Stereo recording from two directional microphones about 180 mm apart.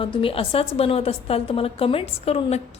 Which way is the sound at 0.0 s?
30° left (ahead or behind).